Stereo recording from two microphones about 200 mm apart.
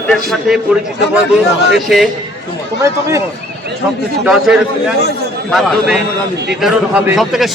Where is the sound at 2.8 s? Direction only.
15° right (ahead or behind).